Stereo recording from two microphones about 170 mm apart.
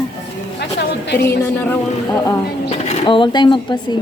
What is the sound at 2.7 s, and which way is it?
Speech, 35° left (ahead or behind).